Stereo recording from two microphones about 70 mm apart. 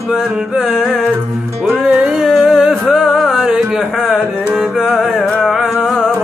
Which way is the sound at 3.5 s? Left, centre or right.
Centre.